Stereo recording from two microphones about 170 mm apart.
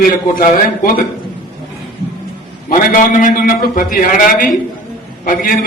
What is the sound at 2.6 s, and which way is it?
A man's voice, 50° left (ahead or behind).